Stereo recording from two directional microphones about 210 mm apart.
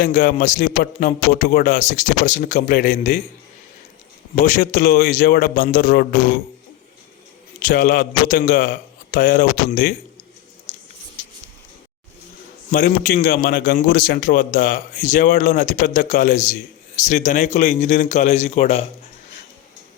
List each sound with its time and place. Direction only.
0.0 s a man's voice: 40° left (ahead or behind)
4.4 s a man's voice: 35° left (ahead or behind)
7.6 s a man's voice: 45° left (ahead or behind)
12.7 s a man's voice: 40° left (ahead or behind)